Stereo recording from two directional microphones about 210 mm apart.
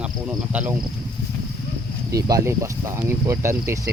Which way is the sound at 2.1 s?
15° right (ahead or behind).